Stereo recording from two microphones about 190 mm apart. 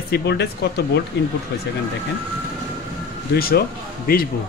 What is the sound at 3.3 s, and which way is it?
Speech, 55° left (ahead or behind).